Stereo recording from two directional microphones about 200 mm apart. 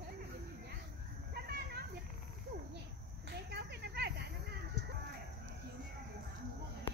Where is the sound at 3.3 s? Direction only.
55° right (ahead or behind).